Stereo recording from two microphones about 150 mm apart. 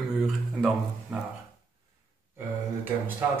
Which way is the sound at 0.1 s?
5° right (ahead or behind).